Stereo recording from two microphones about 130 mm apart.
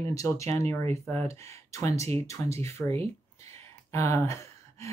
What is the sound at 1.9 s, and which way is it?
Speech, 55° right (ahead or behind).